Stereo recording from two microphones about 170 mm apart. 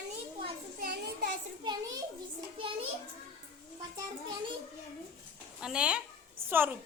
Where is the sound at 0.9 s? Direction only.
80° right.